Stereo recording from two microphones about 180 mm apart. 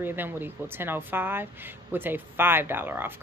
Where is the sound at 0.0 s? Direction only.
10° right (ahead or behind).